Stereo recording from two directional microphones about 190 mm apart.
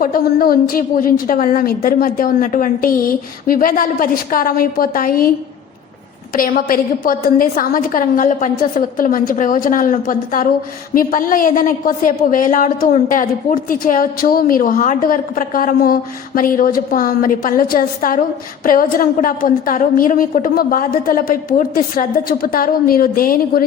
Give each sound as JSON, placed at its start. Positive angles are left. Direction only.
{"t": 0.0, "sound": "a woman's voice", "side_deg": 50}
{"t": 6.3, "sound": "a woman's voice", "side_deg": 50}